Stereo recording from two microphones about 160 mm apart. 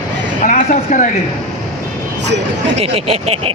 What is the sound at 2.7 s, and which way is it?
Speech, 40° right (ahead or behind).